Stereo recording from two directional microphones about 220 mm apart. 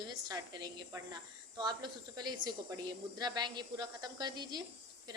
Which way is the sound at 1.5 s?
20° right (ahead or behind).